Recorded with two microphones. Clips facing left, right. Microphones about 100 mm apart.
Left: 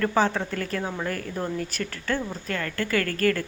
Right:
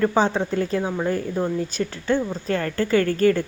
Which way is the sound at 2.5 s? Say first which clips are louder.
Right 6 dB; 30° right (ahead or behind).